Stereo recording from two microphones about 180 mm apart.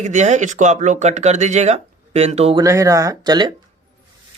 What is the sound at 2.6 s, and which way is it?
Speech, 20° right (ahead or behind).